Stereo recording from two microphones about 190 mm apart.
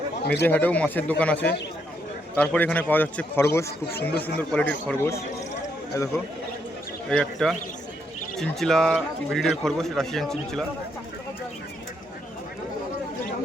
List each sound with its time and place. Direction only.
0.4 s a man's voice: 10° left (ahead or behind)
7.1 s a man's voice: 5° left (ahead or behind)